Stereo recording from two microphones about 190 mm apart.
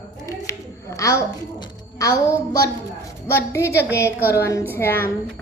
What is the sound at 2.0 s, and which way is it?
A woman's voice, 20° left (ahead or behind).